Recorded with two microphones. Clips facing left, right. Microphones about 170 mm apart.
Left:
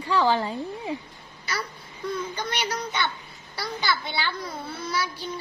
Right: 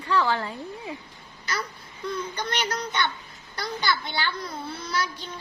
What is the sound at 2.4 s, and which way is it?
A child's voice, 10° left (ahead or behind).